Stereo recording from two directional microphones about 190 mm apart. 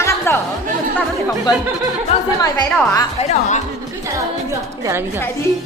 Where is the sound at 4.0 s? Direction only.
15° right (ahead or behind).